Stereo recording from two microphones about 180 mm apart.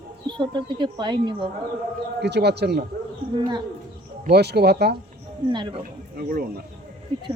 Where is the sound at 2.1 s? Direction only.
70° right (ahead or behind).